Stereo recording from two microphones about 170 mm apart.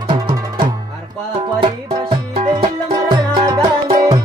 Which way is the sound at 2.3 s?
35° right (ahead or behind).